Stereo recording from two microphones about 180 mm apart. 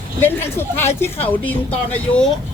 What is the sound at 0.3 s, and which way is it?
Speech, 10° left (ahead or behind).